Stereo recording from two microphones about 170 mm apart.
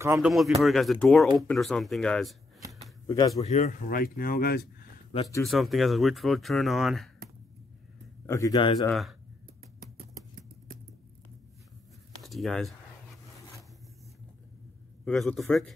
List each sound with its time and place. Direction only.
0.0 s speech: 15° right (ahead or behind)
0.3 s speech: centre (ahead or behind)
3.1 s speech: 20° left (ahead or behind)
3.3 s speech: 45° left (ahead or behind); by 4.6 s 65° left (ahead or behind)
5.5 s speech: centre (ahead or behind)
8.3 s speech: 20° left (ahead or behind)
12.2 s speech: centre (ahead or behind)
15.0 s speech: centre (ahead or behind)